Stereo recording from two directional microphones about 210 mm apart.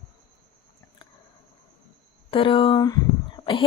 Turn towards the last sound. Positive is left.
turn(degrees=25)  # may be behind; listen again after turning